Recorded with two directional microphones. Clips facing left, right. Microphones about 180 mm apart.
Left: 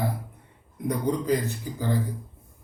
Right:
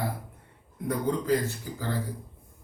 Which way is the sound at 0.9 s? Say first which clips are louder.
Left 1 dB; 15° left (ahead or behind).